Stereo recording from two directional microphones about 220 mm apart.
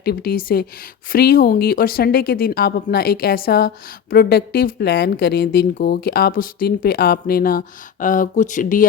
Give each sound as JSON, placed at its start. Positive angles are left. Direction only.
{"t": 0.0, "sound": "a woman's voice", "side_deg": 45}